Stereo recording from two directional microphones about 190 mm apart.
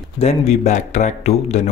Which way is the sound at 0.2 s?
35° left (ahead or behind).